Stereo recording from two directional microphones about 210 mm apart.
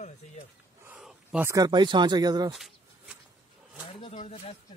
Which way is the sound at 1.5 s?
20° right (ahead or behind).